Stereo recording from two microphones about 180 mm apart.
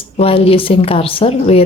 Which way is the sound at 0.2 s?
30° left (ahead or behind).